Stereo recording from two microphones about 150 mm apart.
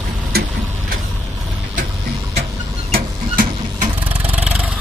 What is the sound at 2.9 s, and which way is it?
Printer, 65° right (ahead or behind).